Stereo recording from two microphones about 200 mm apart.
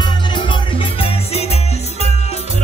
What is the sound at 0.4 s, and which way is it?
Music, 25° left (ahead or behind).